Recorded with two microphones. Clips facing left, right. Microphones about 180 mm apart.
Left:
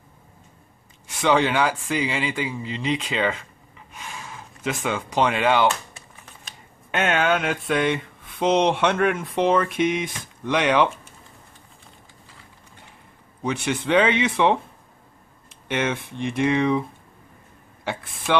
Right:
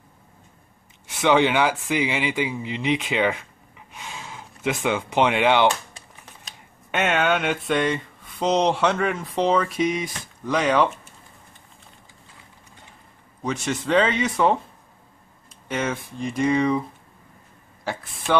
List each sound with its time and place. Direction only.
1.2 s speech: 15° right (ahead or behind)
6.9 s mantra: centre (ahead or behind)
13.8 s mantra: 5° left (ahead or behind)
15.7 s mantra: 5° left (ahead or behind)
17.8 s mantra: centre (ahead or behind)